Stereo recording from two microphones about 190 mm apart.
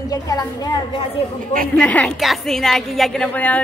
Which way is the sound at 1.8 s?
5° left (ahead or behind).